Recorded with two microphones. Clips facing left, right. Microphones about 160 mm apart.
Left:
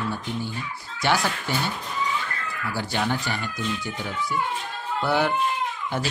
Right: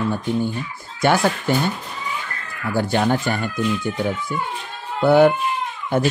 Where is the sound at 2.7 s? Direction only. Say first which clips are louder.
Right 8 dB; 50° right (ahead or behind).